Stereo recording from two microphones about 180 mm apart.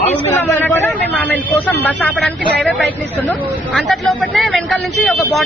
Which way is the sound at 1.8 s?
10° left (ahead or behind).